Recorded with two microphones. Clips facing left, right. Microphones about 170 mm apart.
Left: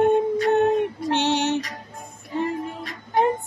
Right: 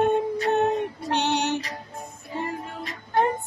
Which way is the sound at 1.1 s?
20° left (ahead or behind).